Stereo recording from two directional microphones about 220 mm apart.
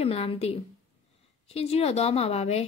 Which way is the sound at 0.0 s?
25° left (ahead or behind).